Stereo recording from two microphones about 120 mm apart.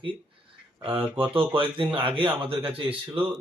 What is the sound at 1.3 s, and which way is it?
Speech, 50° right (ahead or behind).